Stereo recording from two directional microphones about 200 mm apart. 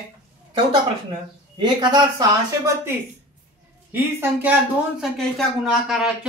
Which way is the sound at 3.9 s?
10° right (ahead or behind).